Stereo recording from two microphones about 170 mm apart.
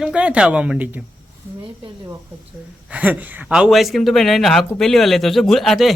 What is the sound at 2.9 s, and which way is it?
Speech, 10° right (ahead or behind).